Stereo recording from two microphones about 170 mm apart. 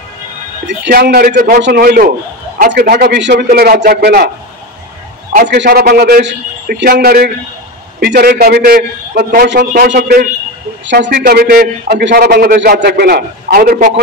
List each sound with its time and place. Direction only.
0.7 s a man's voice: 75° right (ahead or behind); by 3.4 s 90° right
3.4 s a man's voice: 60° right (ahead or behind)
5.4 s a man's voice: 70° right (ahead or behind)
10.9 s a man's voice: 90° right; by 14.0 s 55° right (ahead or behind)